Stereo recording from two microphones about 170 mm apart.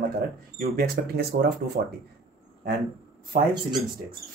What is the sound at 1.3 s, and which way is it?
Speech, 55° right (ahead or behind).